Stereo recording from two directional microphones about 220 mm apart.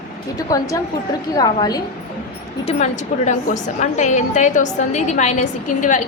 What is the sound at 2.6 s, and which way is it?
A woman's voice, 30° left (ahead or behind).